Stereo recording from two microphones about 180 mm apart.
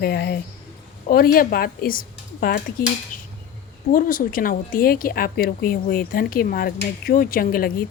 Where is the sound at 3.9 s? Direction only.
50° left (ahead or behind).